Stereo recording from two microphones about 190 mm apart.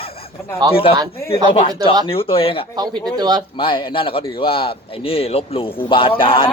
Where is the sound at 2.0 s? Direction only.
30° left (ahead or behind).